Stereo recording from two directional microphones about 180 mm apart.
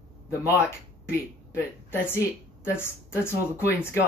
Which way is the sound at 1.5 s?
10° left (ahead or behind).